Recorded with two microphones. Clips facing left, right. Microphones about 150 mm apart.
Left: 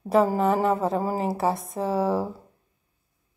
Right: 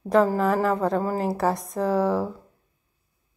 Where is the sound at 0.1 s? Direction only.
5° left (ahead or behind).